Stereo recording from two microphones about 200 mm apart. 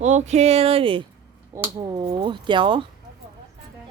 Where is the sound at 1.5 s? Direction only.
15° right (ahead or behind).